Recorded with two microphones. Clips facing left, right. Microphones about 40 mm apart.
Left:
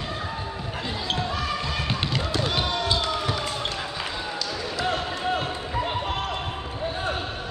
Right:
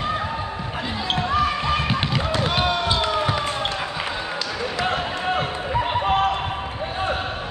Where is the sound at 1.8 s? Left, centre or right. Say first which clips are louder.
Right 4 dB; centre.